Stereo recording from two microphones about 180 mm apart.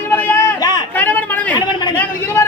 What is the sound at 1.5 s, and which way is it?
Speech, 25° left (ahead or behind).